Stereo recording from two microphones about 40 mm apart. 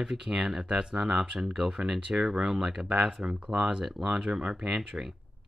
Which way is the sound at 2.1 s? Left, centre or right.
Centre.